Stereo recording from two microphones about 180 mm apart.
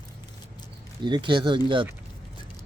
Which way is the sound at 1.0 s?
25° right (ahead or behind).